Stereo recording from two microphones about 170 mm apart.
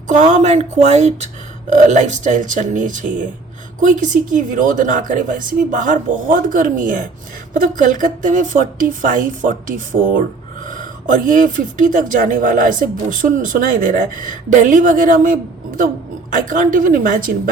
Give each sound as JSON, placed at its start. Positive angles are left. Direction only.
{"t": 0.1, "sound": "speech", "side_deg": -45}